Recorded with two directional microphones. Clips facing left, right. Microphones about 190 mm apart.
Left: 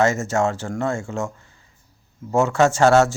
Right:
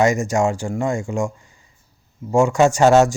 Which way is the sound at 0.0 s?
15° right (ahead or behind).